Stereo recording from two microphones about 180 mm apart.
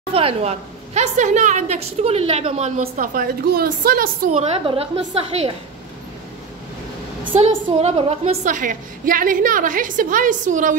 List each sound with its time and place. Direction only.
0.1 s a woman's voice: 30° right (ahead or behind); by 4.3 s 55° right (ahead or behind)
4.3 s a woman's voice: 35° right (ahead or behind)
7.3 s a woman's voice: 35° right (ahead or behind)